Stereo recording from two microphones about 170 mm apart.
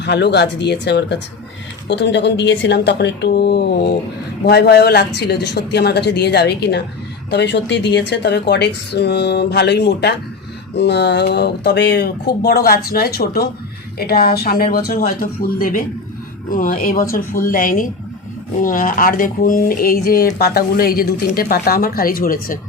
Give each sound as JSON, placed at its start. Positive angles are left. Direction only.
{"t": 0.0, "sound": "a woman's voice", "side_deg": 90}
{"t": 7.3, "sound": "speech", "side_deg": 85}